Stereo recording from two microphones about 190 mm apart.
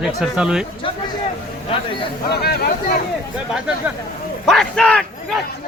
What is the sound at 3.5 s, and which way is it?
Speech, 5° right (ahead or behind).